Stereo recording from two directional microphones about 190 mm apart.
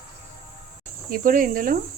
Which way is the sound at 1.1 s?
45° right (ahead or behind).